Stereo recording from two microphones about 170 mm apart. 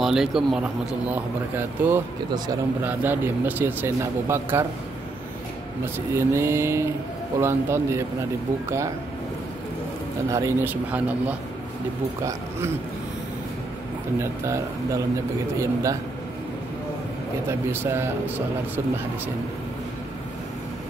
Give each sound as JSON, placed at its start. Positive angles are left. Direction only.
{"t": 0.0, "sound": "speech", "side_deg": 0}
{"t": 5.9, "sound": "speech", "side_deg": -15}
{"t": 10.3, "sound": "speech", "side_deg": -15}
{"t": 14.1, "sound": "a man's voice", "side_deg": -15}
{"t": 17.5, "sound": "speech", "side_deg": -15}